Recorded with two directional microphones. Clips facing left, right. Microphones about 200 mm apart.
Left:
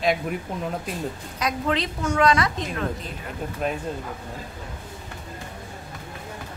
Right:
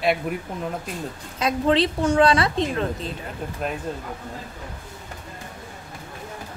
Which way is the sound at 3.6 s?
Centre (ahead or behind).